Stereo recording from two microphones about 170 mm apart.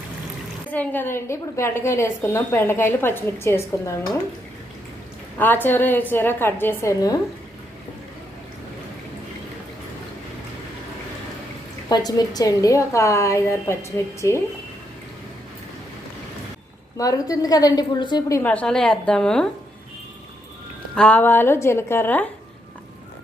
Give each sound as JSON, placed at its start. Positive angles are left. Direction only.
{"t": 0.7, "sound": "a woman's voice", "side_deg": 10}
{"t": 5.4, "sound": "a woman's voice", "side_deg": 10}
{"t": 11.9, "sound": "a woman's voice", "side_deg": 20}
{"t": 17.0, "sound": "a woman's voice", "side_deg": 20}
{"t": 20.9, "sound": "a woman's voice", "side_deg": 5}